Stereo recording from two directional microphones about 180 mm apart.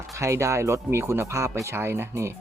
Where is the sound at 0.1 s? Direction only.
15° right (ahead or behind).